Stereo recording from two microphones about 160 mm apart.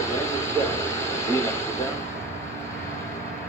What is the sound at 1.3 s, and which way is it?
Speech, 15° left (ahead or behind).